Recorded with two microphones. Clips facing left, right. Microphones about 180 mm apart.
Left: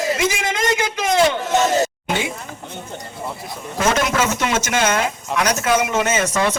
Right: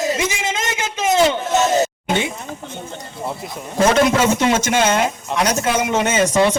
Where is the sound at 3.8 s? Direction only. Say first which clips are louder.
Right 4 dB; 30° right (ahead or behind).